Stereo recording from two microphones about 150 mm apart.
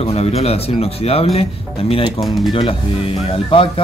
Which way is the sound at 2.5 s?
35° left (ahead or behind).